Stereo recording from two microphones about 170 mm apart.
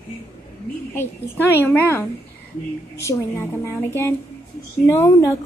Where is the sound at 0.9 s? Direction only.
15° left (ahead or behind).